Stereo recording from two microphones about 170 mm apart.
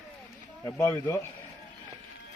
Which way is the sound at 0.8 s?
15° left (ahead or behind).